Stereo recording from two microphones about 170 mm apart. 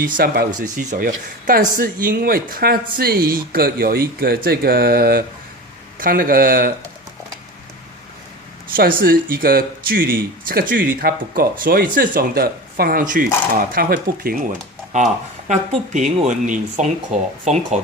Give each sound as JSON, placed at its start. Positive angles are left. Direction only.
{"t": 0.0, "sound": "speech", "side_deg": -60}
{"t": 8.7, "sound": "speech", "side_deg": -60}
{"t": 14.9, "sound": "speech", "side_deg": -45}